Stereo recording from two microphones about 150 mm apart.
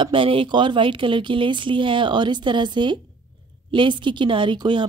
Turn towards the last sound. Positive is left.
turn(degrees=-30)  # may be behind; listen again after turning